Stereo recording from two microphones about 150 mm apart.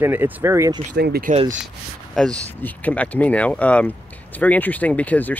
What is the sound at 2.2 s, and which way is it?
Speech, 5° left (ahead or behind).